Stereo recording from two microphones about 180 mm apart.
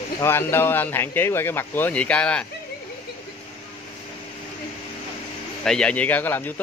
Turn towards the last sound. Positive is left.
turn(degrees=10)  # may be behind; listen again after turning